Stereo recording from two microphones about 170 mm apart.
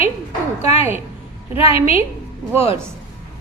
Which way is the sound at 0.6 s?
40° left (ahead or behind).